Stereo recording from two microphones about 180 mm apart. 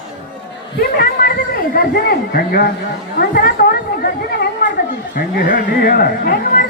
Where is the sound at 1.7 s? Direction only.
55° left (ahead or behind).